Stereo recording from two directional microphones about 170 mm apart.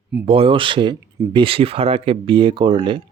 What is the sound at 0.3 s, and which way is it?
Speech, 30° right (ahead or behind).